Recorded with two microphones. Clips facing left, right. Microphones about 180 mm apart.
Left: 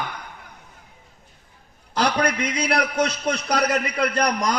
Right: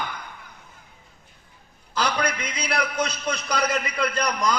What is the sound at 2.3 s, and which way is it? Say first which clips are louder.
A man's voice: left 5 dB; 70° left (ahead or behind).